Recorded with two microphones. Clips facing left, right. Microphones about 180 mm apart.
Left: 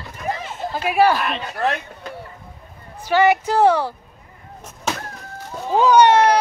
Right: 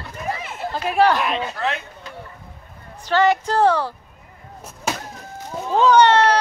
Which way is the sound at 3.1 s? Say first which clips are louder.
Left 2 dB; 10° left (ahead or behind).